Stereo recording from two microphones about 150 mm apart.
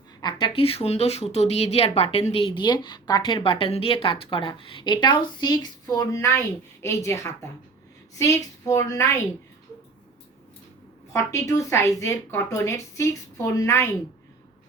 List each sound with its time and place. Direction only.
0.2 s a woman's voice: 30° left (ahead or behind)
11.1 s speech: 20° left (ahead or behind)